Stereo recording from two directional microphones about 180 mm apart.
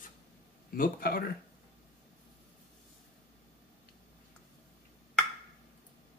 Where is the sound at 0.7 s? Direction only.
55° left (ahead or behind).